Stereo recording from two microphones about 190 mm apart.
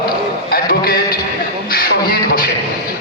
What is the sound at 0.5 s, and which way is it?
Speech, 50° left (ahead or behind).